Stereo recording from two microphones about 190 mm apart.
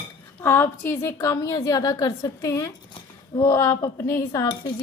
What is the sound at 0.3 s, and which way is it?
Speech, 10° left (ahead or behind).